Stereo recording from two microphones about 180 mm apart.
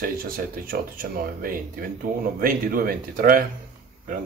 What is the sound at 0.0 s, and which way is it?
Speech, 55° right (ahead or behind).